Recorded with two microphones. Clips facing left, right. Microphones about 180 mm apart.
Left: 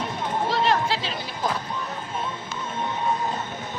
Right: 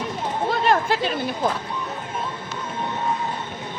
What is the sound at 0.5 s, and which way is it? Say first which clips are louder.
Speech: right 3 dB; 50° right (ahead or behind).